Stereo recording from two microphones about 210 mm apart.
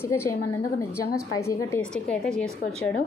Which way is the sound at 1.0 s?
90° left.